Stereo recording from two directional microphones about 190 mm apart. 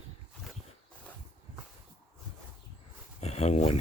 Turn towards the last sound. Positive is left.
turn(degrees=35)  # may be behind; listen again after turning